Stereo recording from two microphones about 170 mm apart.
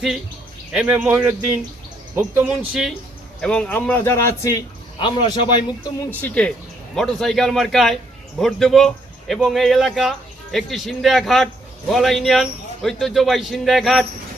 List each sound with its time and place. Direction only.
0.7 s speech: 5° right (ahead or behind)
3.4 s a man's voice: 5° left (ahead or behind); by 5.9 s 25° left (ahead or behind)
6.1 s a man's voice: 10° left (ahead or behind)